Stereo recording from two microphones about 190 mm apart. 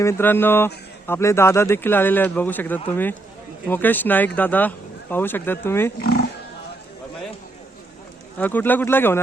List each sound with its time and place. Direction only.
0.0 s speech: 15° left (ahead or behind)
6.0 s speech: 55° left (ahead or behind)
8.4 s speech: 10° left (ahead or behind)